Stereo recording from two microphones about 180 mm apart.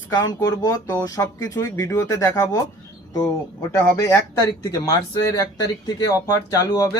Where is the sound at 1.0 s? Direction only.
20° left (ahead or behind).